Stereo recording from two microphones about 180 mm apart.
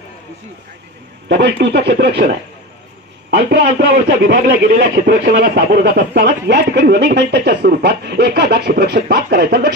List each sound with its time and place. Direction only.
1.3 s speech: 70° right (ahead or behind)